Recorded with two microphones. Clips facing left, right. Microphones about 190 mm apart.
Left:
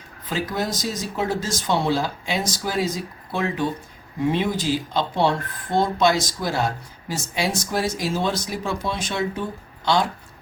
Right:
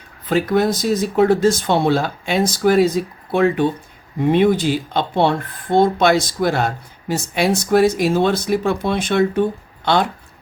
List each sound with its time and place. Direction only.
0.3 s speech: 60° right (ahead or behind)